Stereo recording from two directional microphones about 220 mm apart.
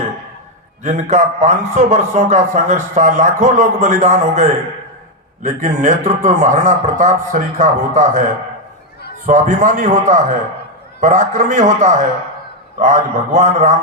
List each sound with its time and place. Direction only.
0.8 s a man's voice: 35° right (ahead or behind)
9.2 s a man's voice: 35° right (ahead or behind)